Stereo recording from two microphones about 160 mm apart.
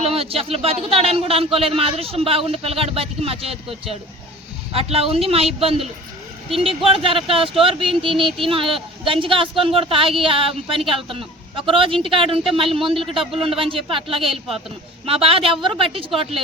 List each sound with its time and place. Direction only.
0.0 s speech: 35° right (ahead or behind)